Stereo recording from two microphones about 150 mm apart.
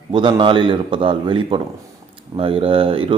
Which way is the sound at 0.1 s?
30° right (ahead or behind).